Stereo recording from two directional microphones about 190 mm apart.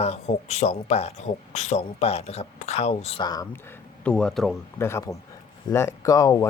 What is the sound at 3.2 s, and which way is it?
Speech, 20° left (ahead or behind).